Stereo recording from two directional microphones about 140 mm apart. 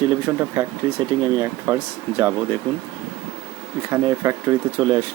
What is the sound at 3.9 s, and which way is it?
Speech, 20° right (ahead or behind).